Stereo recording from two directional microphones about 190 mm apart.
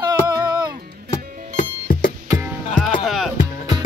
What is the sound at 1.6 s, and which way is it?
Music, 45° left (ahead or behind).